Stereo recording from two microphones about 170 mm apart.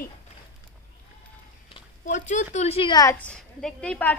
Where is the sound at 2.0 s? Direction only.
45° left (ahead or behind); by 3.1 s 25° left (ahead or behind).